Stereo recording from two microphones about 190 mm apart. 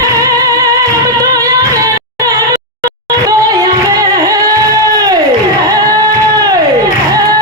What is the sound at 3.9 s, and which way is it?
Music, 20° right (ahead or behind).